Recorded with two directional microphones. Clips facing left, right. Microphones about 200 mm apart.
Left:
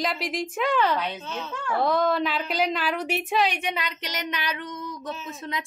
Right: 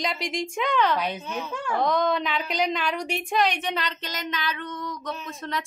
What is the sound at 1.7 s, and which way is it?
Speech, 5° left (ahead or behind).